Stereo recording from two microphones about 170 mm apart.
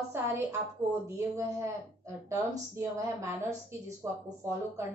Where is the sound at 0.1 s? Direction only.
15° right (ahead or behind).